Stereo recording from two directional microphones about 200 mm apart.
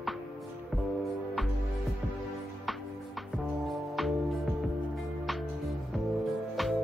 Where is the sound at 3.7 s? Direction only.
Centre (ahead or behind).